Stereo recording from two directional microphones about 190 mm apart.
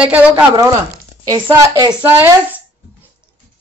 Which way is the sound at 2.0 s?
10° right (ahead or behind).